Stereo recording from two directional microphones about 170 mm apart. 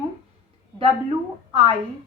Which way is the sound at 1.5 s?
30° right (ahead or behind).